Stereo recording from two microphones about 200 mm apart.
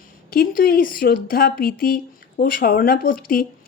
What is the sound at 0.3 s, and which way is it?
Speech, 45° left (ahead or behind).